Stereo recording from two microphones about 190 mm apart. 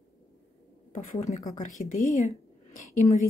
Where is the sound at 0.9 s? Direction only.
40° left (ahead or behind).